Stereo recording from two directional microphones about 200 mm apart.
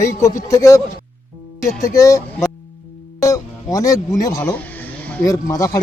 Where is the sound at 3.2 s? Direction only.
15° left (ahead or behind).